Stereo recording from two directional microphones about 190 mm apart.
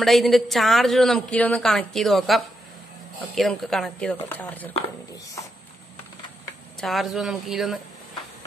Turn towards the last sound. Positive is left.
turn(degrees=0)  # may be behind; listen again after turning